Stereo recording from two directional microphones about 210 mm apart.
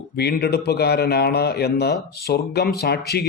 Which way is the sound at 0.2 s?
50° left (ahead or behind).